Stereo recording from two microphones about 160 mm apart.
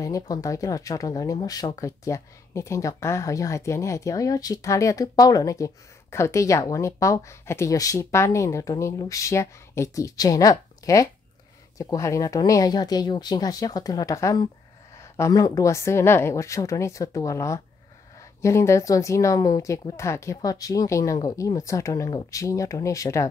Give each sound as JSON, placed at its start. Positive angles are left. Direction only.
{"t": 0.0, "sound": "speech", "side_deg": 20}